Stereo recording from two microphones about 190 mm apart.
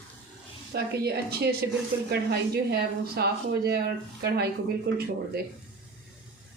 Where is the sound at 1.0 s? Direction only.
55° right (ahead or behind).